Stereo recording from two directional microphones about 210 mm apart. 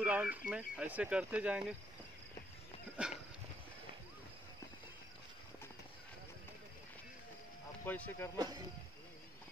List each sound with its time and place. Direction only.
0.0 s speech: 5° right (ahead or behind)
3.0 s speech: 5° right (ahead or behind)
7.8 s speech: 10° left (ahead or behind)
8.4 s speech: 20° right (ahead or behind)